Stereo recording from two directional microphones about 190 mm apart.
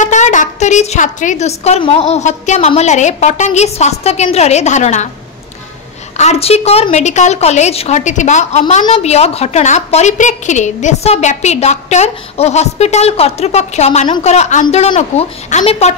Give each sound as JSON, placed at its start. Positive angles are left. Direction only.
{"t": 0.0, "sound": "a woman's voice", "side_deg": 40}
{"t": 6.1, "sound": "a woman's voice", "side_deg": 35}